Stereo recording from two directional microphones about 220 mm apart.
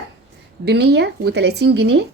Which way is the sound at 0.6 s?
50° right (ahead or behind).